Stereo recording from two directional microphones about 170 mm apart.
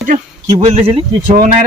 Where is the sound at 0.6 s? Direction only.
35° right (ahead or behind).